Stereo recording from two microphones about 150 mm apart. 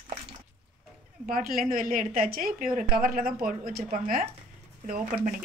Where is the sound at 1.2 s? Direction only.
65° right (ahead or behind).